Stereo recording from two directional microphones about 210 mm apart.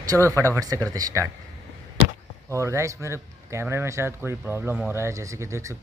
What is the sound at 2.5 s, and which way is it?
Speech, 15° right (ahead or behind).